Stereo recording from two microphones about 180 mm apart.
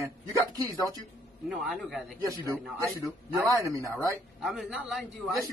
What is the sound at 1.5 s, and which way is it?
A man's voice, centre (ahead or behind).